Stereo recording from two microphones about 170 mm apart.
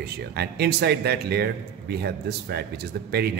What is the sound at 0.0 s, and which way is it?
Speech, 70° right (ahead or behind).